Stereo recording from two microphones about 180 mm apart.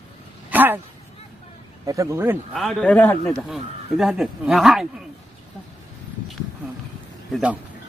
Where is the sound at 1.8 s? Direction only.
15° right (ahead or behind).